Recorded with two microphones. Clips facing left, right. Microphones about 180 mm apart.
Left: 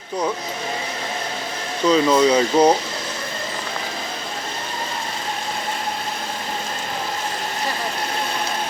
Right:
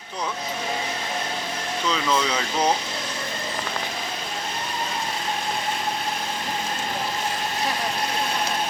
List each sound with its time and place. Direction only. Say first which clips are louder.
1.9 s speech: left 10 dB; 35° left (ahead or behind)